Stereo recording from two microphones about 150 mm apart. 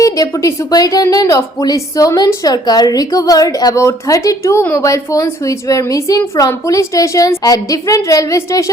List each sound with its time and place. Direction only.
0.0 s a woman's voice: 20° left (ahead or behind)